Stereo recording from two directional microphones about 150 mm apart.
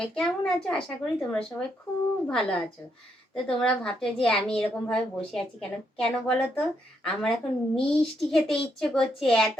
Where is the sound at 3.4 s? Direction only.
5° left (ahead or behind).